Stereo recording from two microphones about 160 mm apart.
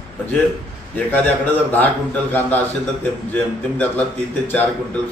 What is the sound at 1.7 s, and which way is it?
A man's voice, 10° left (ahead or behind).